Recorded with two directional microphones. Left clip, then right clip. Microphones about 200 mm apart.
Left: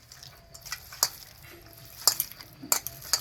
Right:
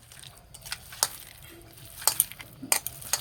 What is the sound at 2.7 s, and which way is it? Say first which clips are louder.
Cutlery: left 1 dB; 30° right (ahead or behind).